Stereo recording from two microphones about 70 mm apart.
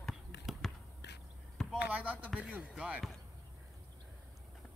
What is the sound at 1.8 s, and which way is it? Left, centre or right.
Speech, centre.